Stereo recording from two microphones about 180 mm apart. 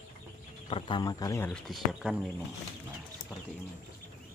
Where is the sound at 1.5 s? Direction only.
Centre (ahead or behind).